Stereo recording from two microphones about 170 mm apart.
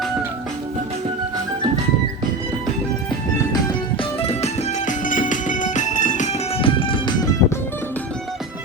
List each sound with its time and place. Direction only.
3.5 s music: 30° left (ahead or behind); by 6.3 s 45° left (ahead or behind)
6.6 s music: 30° left (ahead or behind)